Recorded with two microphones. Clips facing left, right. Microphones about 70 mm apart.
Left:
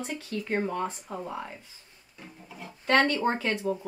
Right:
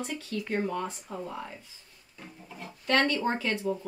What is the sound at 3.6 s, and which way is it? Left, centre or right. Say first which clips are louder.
Speech: left 1 dB; centre.